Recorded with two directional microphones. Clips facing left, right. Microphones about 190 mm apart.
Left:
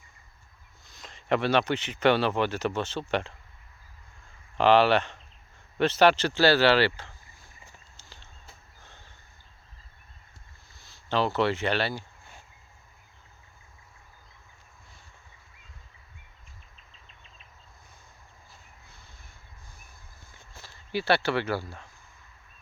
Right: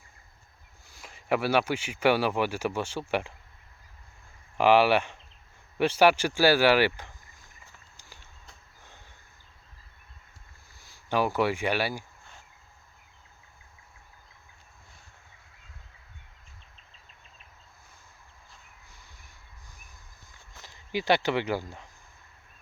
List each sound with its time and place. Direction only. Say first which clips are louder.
0.9 s speech: left 1 dB; 10° right (ahead or behind)
4.5 s speech: even; 10° right (ahead or behind)
7.9 s a sound: left 1 dB; 10° right (ahead or behind)
10.8 s speech: even; 10° right (ahead or behind)
20.5 s speech: even; 15° right (ahead or behind)